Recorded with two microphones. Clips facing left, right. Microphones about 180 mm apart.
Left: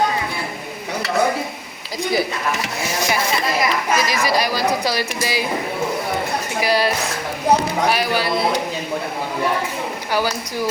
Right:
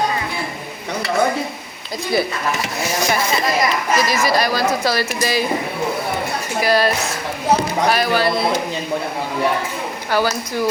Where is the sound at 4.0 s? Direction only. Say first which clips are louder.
Right 2 dB; 15° left (ahead or behind).